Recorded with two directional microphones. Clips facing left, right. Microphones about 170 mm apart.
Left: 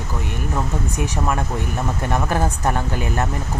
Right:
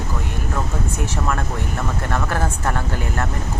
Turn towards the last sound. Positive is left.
turn(degrees=20)  # may be behind; listen again after turning